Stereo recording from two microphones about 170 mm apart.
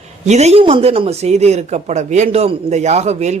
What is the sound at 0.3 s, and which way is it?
Speech, 40° right (ahead or behind).